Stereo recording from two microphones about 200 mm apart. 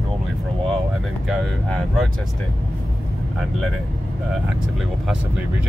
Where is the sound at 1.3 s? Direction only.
Centre (ahead or behind).